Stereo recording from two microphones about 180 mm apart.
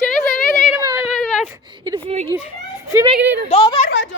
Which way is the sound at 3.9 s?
90° left.